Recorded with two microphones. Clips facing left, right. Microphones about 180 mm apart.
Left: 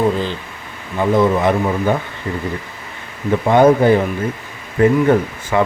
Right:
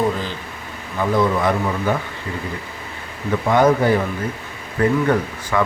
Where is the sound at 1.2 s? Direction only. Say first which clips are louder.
Left 3 dB; 20° left (ahead or behind).